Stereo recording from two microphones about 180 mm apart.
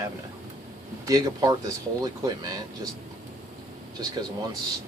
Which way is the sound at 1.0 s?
20° right (ahead or behind).